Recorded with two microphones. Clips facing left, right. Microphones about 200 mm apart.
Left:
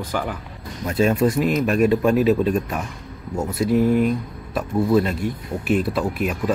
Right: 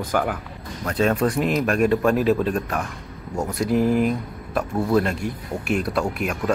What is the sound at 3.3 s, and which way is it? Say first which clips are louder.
Speech: left 2 dB; centre (ahead or behind).